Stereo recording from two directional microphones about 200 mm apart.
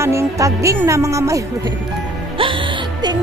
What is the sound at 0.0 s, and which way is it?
Speech, 15° right (ahead or behind).